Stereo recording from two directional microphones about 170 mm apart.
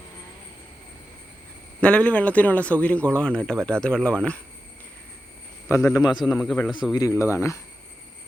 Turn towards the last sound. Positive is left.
turn(degrees=15)  # may be behind; listen again after turning